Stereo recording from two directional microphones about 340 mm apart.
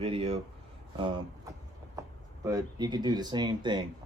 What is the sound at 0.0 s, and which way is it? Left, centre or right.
Speech, centre.